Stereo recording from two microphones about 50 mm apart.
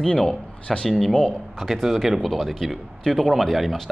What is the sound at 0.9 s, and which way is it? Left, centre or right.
Speech, centre.